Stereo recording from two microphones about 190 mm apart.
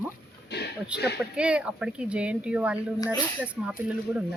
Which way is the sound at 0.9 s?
5° right (ahead or behind).